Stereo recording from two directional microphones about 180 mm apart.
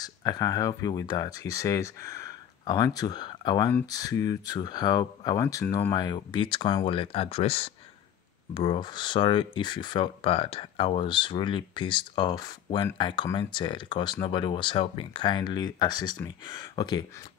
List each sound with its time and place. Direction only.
0.0 s speech: 20° left (ahead or behind)
5.9 s speech: 25° left (ahead or behind)